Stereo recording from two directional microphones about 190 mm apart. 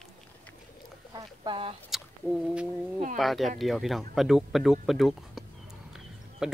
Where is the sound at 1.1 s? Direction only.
25° right (ahead or behind).